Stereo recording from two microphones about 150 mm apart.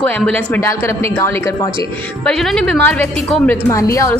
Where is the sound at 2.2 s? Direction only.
5° left (ahead or behind).